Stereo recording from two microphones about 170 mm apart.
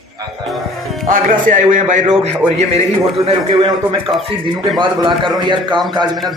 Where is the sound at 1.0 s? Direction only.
50° right (ahead or behind).